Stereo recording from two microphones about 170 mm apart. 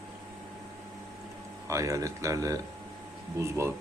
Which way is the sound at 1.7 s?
20° right (ahead or behind).